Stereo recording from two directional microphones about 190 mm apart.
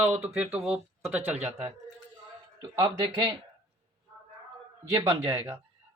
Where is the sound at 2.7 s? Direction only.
25° right (ahead or behind).